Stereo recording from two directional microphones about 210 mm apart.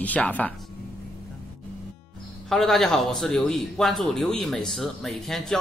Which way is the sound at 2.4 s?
Centre (ahead or behind).